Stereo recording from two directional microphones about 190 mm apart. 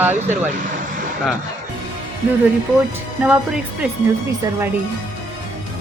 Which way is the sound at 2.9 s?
10° right (ahead or behind).